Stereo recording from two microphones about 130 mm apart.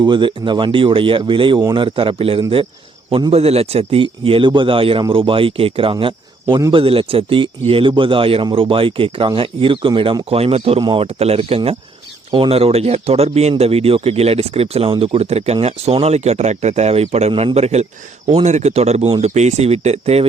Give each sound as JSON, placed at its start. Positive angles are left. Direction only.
{"t": 0.0, "sound": "speech", "side_deg": -40}
{"t": 3.3, "sound": "a man's voice", "side_deg": -50}